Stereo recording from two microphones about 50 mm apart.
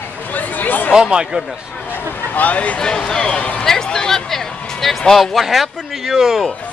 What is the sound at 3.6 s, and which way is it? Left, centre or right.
Speech, centre.